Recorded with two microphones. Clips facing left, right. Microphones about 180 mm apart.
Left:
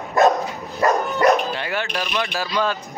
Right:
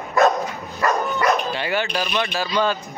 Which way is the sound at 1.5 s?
Centre (ahead or behind).